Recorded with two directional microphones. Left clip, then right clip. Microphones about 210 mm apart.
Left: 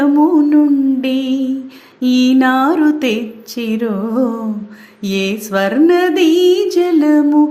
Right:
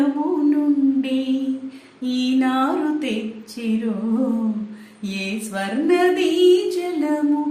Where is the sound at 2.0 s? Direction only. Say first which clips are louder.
Left 9 dB; 45° left (ahead or behind).